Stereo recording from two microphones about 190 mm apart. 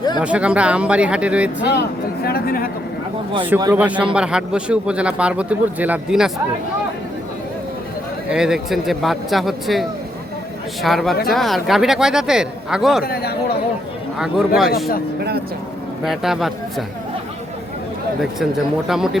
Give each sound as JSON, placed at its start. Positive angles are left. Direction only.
{"t": 0.2, "sound": "speech", "side_deg": -5}
{"t": 2.2, "sound": "speech", "side_deg": 50}
{"t": 3.6, "sound": "a man's voice", "side_deg": -10}
{"t": 8.3, "sound": "a man's voice", "side_deg": -5}
{"t": 10.8, "sound": "a man's voice", "side_deg": 0}
{"t": 14.2, "sound": "a man's voice", "side_deg": 0}
{"t": 16.0, "sound": "a man's voice", "side_deg": 0}
{"t": 18.9, "sound": "a man's voice", "side_deg": 0}